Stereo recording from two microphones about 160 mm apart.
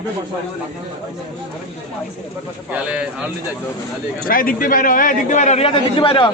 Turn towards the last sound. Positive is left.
turn(degrees=30)  # may be behind; listen again after turning